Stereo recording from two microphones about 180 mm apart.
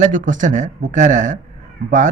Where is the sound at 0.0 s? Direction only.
45° right (ahead or behind).